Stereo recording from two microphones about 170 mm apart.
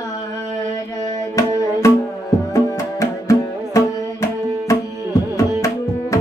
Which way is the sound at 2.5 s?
20° left (ahead or behind).